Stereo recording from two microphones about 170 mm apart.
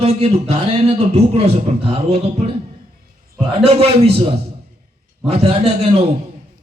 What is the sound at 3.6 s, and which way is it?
Speech, 35° right (ahead or behind).